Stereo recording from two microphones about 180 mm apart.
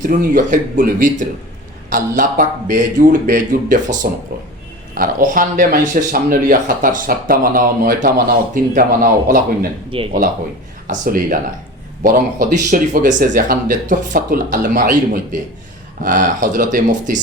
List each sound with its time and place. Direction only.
0.0 s speech: 45° right (ahead or behind)
9.9 s speech: 30° right (ahead or behind)
10.8 s speech: 50° right (ahead or behind)